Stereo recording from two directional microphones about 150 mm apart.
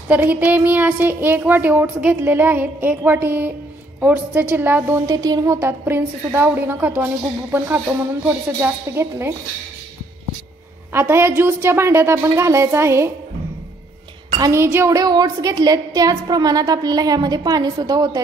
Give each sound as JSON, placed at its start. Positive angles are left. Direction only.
{"t": 0.1, "sound": "a woman's voice", "side_deg": -10}
{"t": 10.9, "sound": "a woman's voice", "side_deg": -15}
{"t": 14.4, "sound": "a woman's voice", "side_deg": -15}